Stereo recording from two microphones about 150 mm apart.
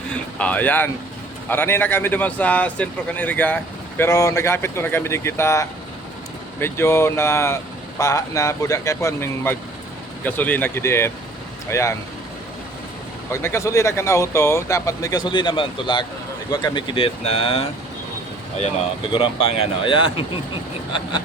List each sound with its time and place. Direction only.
0.1 s a sound: 10° left (ahead or behind)
1.5 s speech: 15° left (ahead or behind)
13.3 s speech: 20° left (ahead or behind); by 17.7 s 40° left (ahead or behind)
19.1 s speech: 35° left (ahead or behind)